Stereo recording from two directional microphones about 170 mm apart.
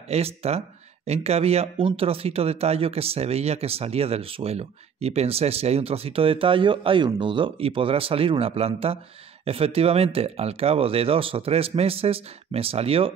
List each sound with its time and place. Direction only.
0.1 s speech: 35° right (ahead or behind)